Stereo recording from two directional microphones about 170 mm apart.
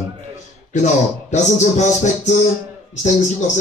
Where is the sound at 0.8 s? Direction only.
45° left (ahead or behind).